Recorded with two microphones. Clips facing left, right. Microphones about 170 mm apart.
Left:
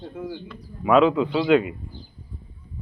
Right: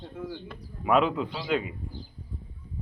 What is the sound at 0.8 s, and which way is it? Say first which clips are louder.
Speech: left 6 dB; 90° left.